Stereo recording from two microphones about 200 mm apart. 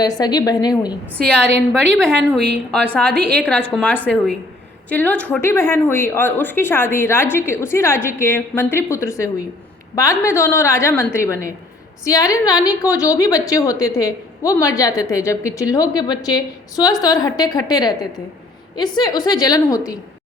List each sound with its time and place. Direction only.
0.0 s a woman's voice: 20° left (ahead or behind)
1.2 s a woman's voice: 5° left (ahead or behind)